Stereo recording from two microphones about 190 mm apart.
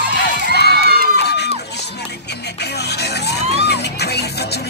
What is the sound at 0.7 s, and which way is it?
Crowd, 55° right (ahead or behind).